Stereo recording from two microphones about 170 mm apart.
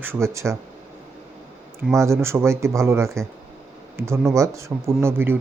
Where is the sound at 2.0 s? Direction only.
15° right (ahead or behind).